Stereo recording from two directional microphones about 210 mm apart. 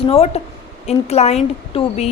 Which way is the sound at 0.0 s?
30° left (ahead or behind).